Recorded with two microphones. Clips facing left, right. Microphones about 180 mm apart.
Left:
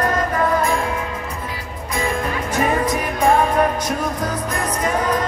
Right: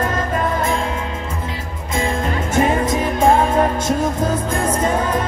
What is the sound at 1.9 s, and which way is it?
Music, 25° right (ahead or behind).